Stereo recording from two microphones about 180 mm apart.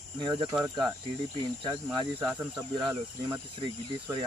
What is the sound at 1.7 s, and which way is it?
Speech, 20° right (ahead or behind).